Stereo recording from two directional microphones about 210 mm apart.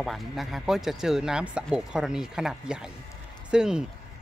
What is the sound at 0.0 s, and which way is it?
Speech, centre (ahead or behind).